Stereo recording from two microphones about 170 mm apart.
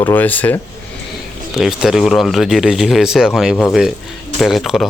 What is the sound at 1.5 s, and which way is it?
Speech, centre (ahead or behind).